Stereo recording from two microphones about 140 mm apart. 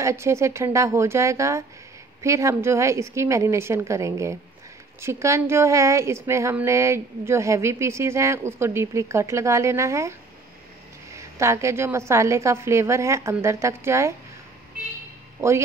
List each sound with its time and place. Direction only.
0.0 s a woman's voice: 20° right (ahead or behind)
11.1 s a woman's voice: 20° right (ahead or behind)